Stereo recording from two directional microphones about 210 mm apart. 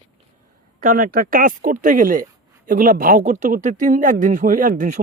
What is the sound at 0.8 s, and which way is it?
Speech, 40° right (ahead or behind).